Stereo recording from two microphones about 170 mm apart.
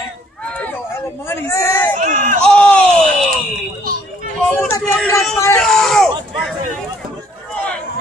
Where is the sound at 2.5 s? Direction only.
5° left (ahead or behind).